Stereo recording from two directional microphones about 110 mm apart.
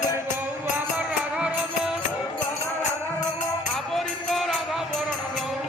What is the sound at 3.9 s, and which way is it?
Music, centre (ahead or behind).